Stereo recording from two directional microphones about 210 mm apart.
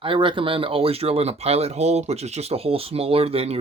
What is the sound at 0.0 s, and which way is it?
Speech, 25° right (ahead or behind).